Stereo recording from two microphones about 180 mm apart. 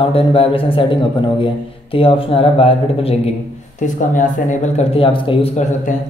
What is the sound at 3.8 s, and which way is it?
Speech, 45° left (ahead or behind).